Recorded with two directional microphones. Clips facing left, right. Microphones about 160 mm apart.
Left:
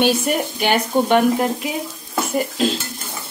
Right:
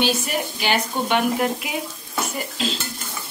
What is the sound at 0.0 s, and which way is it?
Speech, 55° left (ahead or behind).